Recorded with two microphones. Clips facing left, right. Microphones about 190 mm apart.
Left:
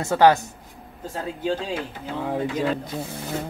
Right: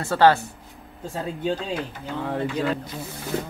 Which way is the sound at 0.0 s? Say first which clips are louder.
Left 1 dB; 20° left (ahead or behind).